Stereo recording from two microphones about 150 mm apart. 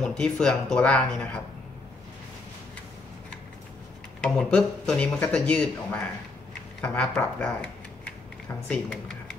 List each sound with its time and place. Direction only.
0.0 s speech: 5° left (ahead or behind)
4.2 s speech: 5° left (ahead or behind)